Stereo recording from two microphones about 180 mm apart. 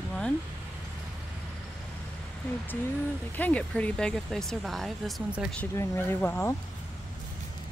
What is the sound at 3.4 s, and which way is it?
Speech, 10° left (ahead or behind).